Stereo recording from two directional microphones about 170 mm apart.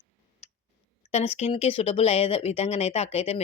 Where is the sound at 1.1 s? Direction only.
40° left (ahead or behind).